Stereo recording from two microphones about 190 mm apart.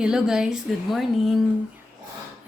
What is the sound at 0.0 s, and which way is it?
A woman's voice, 5° right (ahead or behind).